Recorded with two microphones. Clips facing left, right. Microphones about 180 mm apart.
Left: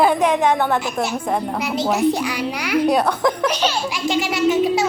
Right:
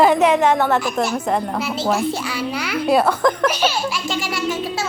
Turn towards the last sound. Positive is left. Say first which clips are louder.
# left 7 dB
turn(degrees=20)  # may be behind; listen again after turning